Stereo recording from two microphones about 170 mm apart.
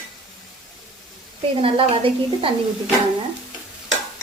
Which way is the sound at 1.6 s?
30° right (ahead or behind).